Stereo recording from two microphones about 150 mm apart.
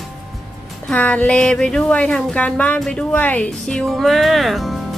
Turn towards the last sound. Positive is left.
turn(degrees=0)  # may be behind; listen again after turning